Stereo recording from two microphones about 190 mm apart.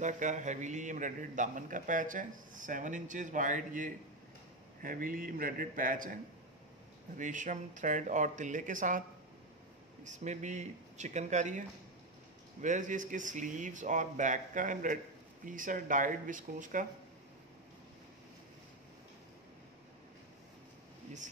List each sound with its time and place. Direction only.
0.0 s a man's voice: 40° right (ahead or behind)
7.2 s speech: 40° right (ahead or behind)
10.0 s speech: 40° right (ahead or behind)
12.6 s a man's voice: 40° right (ahead or behind)